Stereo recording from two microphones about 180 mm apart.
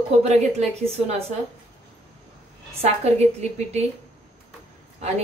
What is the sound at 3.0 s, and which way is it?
Speech, 35° right (ahead or behind).